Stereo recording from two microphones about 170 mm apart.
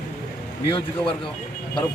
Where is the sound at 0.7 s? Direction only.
30° left (ahead or behind).